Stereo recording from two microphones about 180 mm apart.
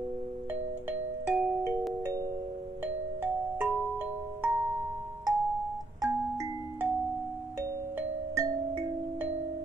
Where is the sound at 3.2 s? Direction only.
10° right (ahead or behind).